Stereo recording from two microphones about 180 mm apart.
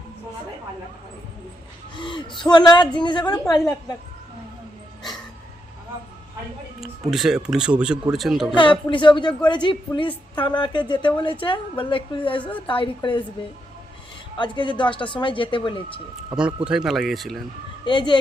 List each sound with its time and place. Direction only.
2.0 s a woman's voice: 25° left (ahead or behind)
7.1 s speech: centre (ahead or behind)
8.5 s a woman's voice: 25° left (ahead or behind)
14.3 s a woman's voice: 25° left (ahead or behind)
16.3 s speech: 5° right (ahead or behind)
17.8 s a woman's voice: 25° left (ahead or behind)